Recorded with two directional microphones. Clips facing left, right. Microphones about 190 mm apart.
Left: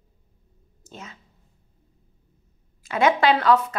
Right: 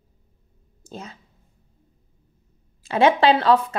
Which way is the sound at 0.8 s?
35° right (ahead or behind).